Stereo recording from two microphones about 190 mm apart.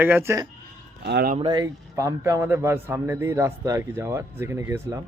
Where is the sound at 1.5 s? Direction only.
20° right (ahead or behind).